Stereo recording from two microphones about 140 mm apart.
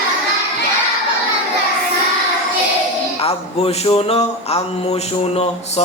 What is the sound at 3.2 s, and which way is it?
Speech, 45° left (ahead or behind).